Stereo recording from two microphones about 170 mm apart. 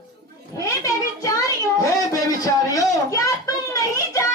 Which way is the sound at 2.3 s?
20° left (ahead or behind).